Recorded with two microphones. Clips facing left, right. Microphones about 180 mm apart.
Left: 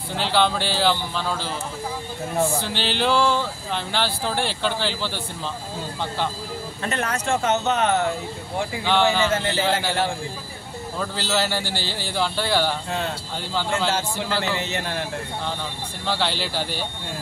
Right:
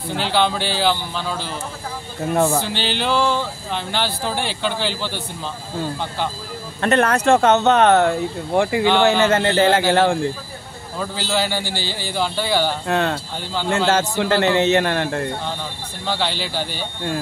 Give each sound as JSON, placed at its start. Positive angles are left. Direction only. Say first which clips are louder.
{"t": 0.2, "sound": "speech", "louder": "right 1 dB", "side_deg": 0}
{"t": 2.3, "sound": "speech", "louder": "right 5 dB", "side_deg": -65}
{"t": 2.6, "sound": "speech", "louder": "right 1 dB", "side_deg": 0}
{"t": 6.8, "sound": "speech", "louder": "right 10 dB", "side_deg": -70}
{"t": 8.8, "sound": "speech", "louder": "right 1 dB", "side_deg": 0}
{"t": 9.3, "sound": "speech", "louder": "right 7 dB", "side_deg": -70}
{"t": 11.0, "sound": "speech", "louder": "right 2 dB", "side_deg": 0}
{"t": 12.8, "sound": "speech", "louder": "right 7 dB", "side_deg": -70}
{"t": 16.1, "sound": "speech", "louder": "right 1 dB", "side_deg": 0}